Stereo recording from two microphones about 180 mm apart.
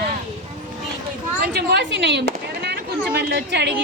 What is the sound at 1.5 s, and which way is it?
A woman's voice, 70° right (ahead or behind).